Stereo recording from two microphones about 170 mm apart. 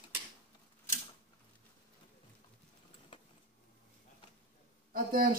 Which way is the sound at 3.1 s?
30° left (ahead or behind).